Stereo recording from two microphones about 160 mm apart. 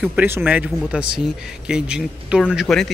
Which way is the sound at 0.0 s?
10° right (ahead or behind).